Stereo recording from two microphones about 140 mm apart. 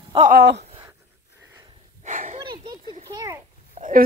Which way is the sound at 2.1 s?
65° right (ahead or behind).